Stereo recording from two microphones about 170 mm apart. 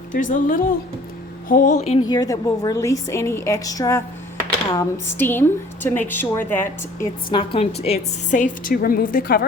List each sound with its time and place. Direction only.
0.1 s a woman's voice: 50° left (ahead or behind)
2.0 s a woman's voice: 20° left (ahead or behind)
7.3 s a woman's voice: 30° left (ahead or behind); by 9.5 s 60° left (ahead or behind)